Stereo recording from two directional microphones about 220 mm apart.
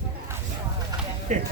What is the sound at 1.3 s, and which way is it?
Speech, 35° right (ahead or behind).